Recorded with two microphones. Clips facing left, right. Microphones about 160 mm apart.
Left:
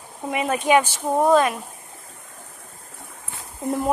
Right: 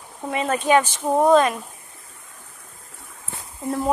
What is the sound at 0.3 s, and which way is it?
Speech, 15° left (ahead or behind).